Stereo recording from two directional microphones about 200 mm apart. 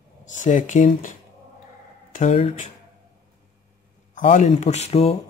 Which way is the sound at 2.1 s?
35° left (ahead or behind).